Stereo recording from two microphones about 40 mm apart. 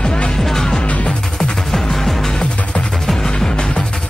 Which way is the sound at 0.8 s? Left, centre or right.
Left.